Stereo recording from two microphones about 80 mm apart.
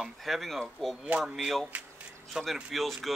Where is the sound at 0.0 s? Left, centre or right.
Centre.